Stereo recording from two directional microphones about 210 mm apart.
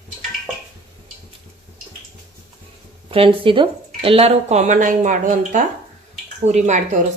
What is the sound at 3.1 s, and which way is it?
Speech, 25° right (ahead or behind).